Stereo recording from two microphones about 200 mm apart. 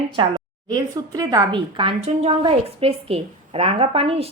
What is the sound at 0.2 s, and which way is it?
A woman's voice, 20° right (ahead or behind).